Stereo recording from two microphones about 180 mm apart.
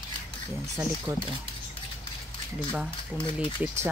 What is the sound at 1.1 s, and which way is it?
Speech, 20° right (ahead or behind).